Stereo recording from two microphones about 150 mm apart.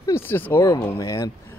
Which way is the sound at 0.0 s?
15° left (ahead or behind).